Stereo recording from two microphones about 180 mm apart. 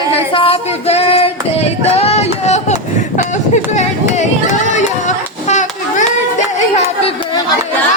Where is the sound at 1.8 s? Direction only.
35° left (ahead or behind).